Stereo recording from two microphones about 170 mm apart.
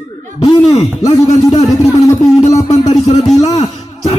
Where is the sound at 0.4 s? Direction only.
35° left (ahead or behind).